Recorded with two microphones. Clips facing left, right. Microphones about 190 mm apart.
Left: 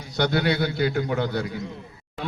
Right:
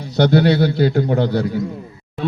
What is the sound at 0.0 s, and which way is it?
A man's voice, 40° right (ahead or behind).